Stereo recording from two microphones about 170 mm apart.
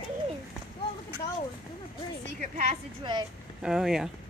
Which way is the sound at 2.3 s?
45° right (ahead or behind).